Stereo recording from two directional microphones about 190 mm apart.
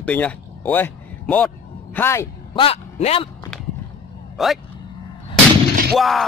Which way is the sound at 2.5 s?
30° left (ahead or behind).